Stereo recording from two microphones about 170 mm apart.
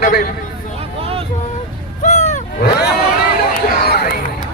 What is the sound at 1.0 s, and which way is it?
Vehicle, 35° right (ahead or behind).